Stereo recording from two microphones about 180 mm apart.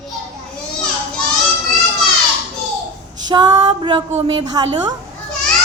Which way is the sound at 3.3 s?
25° right (ahead or behind).